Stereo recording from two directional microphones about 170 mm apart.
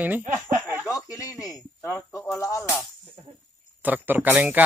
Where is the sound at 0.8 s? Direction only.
20° left (ahead or behind).